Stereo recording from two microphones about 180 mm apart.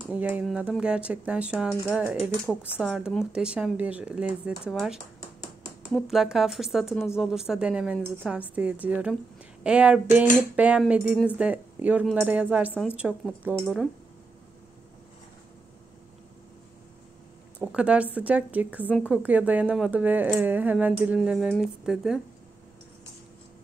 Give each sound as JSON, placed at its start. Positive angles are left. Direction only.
{"t": 0.1, "sound": "speech", "side_deg": -10}
{"t": 6.0, "sound": "a woman's voice", "side_deg": 0}
{"t": 17.6, "sound": "a woman's voice", "side_deg": -5}